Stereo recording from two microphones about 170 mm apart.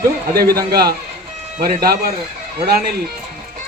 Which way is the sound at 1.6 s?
60° right (ahead or behind).